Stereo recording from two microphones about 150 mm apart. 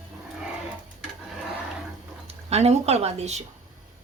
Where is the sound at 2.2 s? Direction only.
45° right (ahead or behind).